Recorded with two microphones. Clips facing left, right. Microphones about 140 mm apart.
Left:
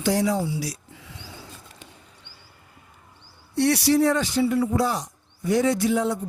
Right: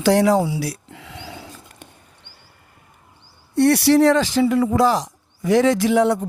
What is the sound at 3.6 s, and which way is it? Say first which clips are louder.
Speech: right 5 dB; 55° right (ahead or behind).